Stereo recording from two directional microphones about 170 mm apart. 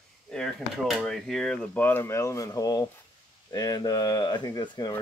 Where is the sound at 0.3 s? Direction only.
Centre (ahead or behind).